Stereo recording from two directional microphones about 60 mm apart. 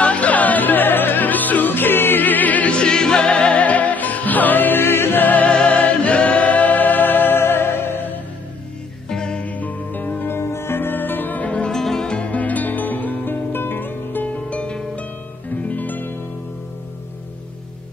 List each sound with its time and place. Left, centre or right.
0.0 s music: left
9.1 s music: centre
9.5 s music: left
10.3 s music: left
11.7 s music: centre; by 14.3 s left
14.5 s music: centre